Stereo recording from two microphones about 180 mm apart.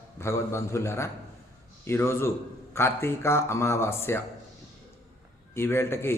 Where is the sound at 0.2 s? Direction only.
15° left (ahead or behind).